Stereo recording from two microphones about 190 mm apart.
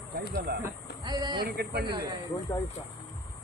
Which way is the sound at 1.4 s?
55° right (ahead or behind).